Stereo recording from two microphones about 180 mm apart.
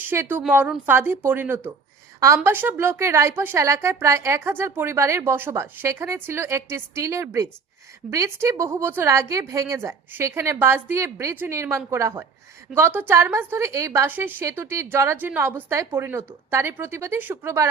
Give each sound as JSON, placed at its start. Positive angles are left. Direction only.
{"t": 0.0, "sound": "a woman's voice", "side_deg": -10}